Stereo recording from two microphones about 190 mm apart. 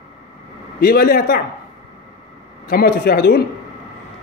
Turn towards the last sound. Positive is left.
turn(degrees=55)  # may be behind; listen again after turning